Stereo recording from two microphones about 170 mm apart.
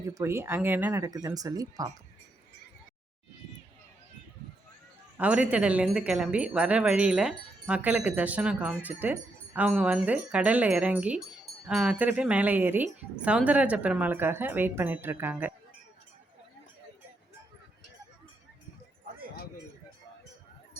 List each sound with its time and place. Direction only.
0.0 s speech: 15° right (ahead or behind)
5.1 s speech: 10° right (ahead or behind)